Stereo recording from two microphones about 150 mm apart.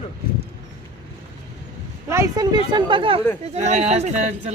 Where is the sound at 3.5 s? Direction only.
50° right (ahead or behind).